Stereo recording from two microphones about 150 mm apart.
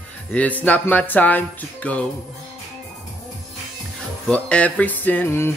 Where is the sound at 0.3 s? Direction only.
10° left (ahead or behind).